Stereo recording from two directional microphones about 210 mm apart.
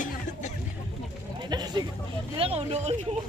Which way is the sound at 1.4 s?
20° right (ahead or behind).